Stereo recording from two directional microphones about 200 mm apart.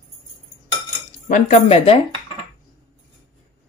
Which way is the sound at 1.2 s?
35° left (ahead or behind).